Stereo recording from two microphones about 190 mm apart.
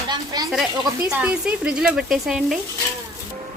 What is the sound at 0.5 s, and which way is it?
Speech, centre (ahead or behind).